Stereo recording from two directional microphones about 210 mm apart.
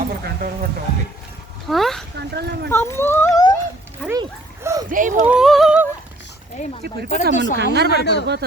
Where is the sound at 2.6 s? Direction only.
10° left (ahead or behind).